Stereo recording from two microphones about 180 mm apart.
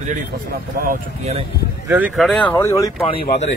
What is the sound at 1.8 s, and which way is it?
Speech, 10° right (ahead or behind).